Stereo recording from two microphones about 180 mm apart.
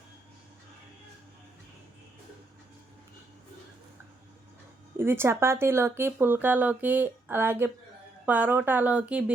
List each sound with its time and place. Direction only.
4.9 s speech: 15° right (ahead or behind)